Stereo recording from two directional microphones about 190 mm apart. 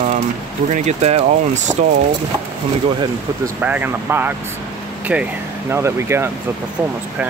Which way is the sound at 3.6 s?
10° right (ahead or behind).